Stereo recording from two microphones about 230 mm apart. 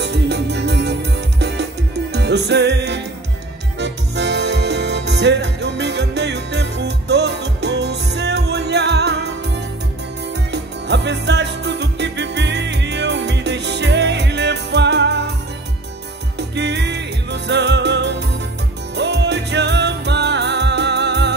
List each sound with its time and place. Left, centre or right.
0.0 s music: right
10.3 s music: right
16.3 s music: right